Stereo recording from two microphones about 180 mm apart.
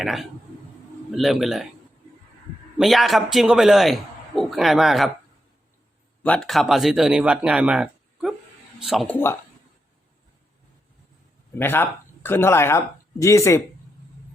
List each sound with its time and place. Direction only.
0.0 s a man's voice: centre (ahead or behind)
2.7 s a man's voice: centre (ahead or behind)
6.2 s a man's voice: 5° left (ahead or behind)
11.5 s speech: 10° left (ahead or behind)